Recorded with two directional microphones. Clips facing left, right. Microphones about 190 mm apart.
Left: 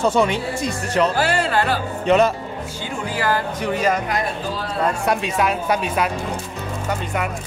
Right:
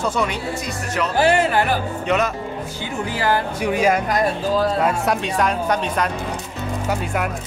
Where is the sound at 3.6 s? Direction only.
10° right (ahead or behind).